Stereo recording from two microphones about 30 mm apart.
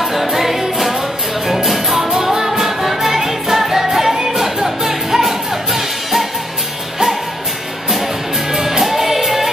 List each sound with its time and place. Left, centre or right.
0.0 s music: centre
2.3 s music: centre
2.8 s music: centre
8.5 s music: centre